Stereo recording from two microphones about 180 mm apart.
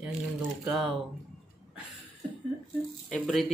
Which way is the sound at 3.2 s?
Centre (ahead or behind).